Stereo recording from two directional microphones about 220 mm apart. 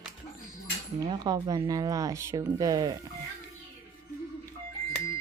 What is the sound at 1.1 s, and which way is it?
Speech, 20° right (ahead or behind).